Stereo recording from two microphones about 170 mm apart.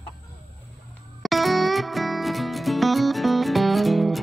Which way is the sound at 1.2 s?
Centre (ahead or behind).